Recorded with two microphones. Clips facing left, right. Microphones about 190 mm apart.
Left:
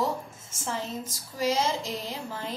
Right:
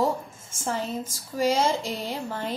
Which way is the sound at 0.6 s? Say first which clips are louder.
Right 4 dB; 50° right (ahead or behind).